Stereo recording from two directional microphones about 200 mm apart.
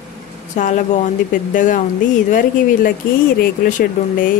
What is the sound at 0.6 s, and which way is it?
A woman's voice, 40° left (ahead or behind).